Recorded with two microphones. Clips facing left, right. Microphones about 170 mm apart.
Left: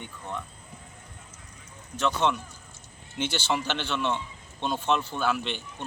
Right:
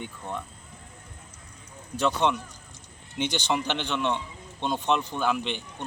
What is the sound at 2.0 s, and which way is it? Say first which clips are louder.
Speech: right 1 dB; 10° right (ahead or behind).